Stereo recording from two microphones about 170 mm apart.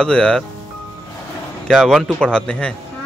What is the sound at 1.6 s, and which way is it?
Speech, centre (ahead or behind).